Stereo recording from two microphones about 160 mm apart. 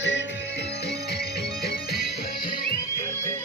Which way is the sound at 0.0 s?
90° left.